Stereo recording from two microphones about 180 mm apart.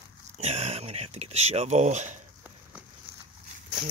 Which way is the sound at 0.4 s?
40° right (ahead or behind).